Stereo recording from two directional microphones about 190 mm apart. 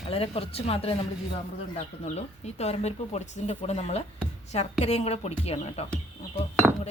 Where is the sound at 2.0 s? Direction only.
35° left (ahead or behind).